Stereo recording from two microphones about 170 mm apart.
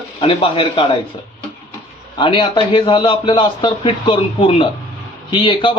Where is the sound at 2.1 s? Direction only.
30° left (ahead or behind).